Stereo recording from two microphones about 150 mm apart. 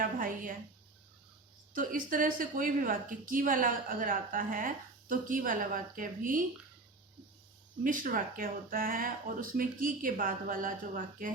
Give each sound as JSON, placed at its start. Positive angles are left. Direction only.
{"t": 0.0, "sound": "a sound", "side_deg": -65}
{"t": 1.7, "sound": "a woman's voice", "side_deg": -65}
{"t": 7.9, "sound": "speech", "side_deg": -60}